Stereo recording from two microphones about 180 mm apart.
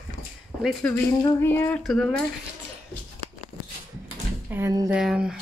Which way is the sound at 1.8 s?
5° left (ahead or behind).